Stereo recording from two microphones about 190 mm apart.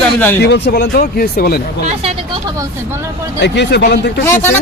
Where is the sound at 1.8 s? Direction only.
35° right (ahead or behind).